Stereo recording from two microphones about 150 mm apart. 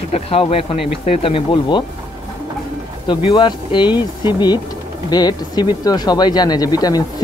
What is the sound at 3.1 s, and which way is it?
Speech, 30° left (ahead or behind).